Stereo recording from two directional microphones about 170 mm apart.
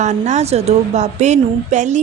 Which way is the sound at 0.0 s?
45° right (ahead or behind).